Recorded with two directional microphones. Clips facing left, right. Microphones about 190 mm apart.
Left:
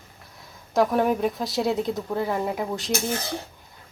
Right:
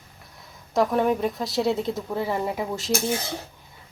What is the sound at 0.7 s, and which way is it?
Speech, centre (ahead or behind).